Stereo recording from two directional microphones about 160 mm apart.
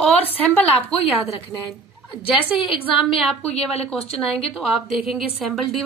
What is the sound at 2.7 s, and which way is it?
Speech, 35° left (ahead or behind).